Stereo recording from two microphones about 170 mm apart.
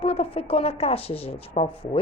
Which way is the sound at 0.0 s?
35° left (ahead or behind).